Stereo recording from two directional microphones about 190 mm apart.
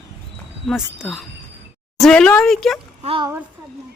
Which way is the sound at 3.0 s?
30° right (ahead or behind).